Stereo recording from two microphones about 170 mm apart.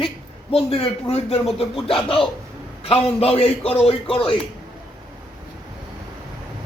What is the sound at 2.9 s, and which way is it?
A man's voice, 35° left (ahead or behind).